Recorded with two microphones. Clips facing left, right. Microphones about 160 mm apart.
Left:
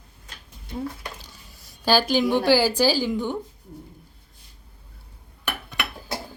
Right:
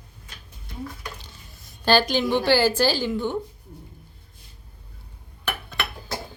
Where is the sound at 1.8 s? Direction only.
10° left (ahead or behind).